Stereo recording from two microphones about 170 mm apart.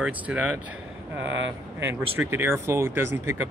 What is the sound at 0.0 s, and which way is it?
Speech, 10° right (ahead or behind).